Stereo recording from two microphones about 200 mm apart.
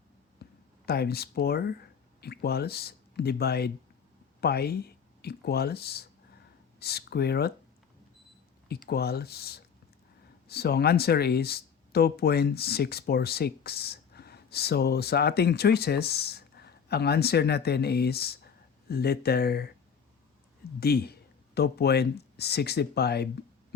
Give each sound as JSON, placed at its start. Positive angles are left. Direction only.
{"t": 0.4, "sound": "a sound", "side_deg": 55}
{"t": 0.9, "sound": "speech", "side_deg": 50}
{"t": 8.9, "sound": "speech", "side_deg": 50}
{"t": 20.7, "sound": "speech", "side_deg": 50}